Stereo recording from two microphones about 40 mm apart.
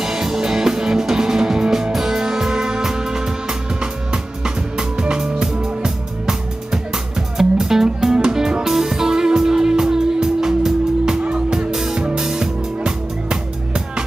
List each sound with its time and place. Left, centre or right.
0.0 s music: centre